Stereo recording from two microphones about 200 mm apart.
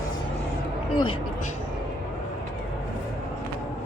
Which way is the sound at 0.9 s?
25° left (ahead or behind).